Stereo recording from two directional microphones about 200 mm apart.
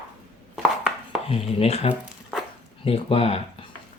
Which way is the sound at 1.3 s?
30° left (ahead or behind).